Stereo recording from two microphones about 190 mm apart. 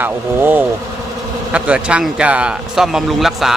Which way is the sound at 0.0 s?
10° right (ahead or behind).